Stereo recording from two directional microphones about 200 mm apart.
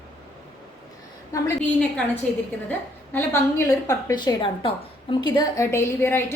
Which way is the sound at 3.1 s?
15° left (ahead or behind).